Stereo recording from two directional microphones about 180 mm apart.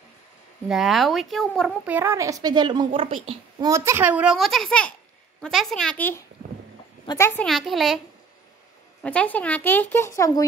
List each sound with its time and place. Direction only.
0.7 s a child's voice: centre (ahead or behind)
1.9 s a child's voice: 10° right (ahead or behind); by 3.3 s 30° right (ahead or behind)
3.6 s a child's voice: 15° right (ahead or behind); by 7.4 s 15° left (ahead or behind)
7.4 s a child's voice: centre (ahead or behind)
9.0 s speech: 5° left (ahead or behind)